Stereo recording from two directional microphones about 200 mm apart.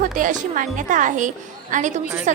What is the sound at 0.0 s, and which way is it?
Speech, 40° right (ahead or behind).